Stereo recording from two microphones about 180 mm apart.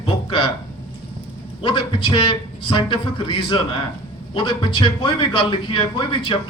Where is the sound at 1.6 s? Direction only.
30° left (ahead or behind).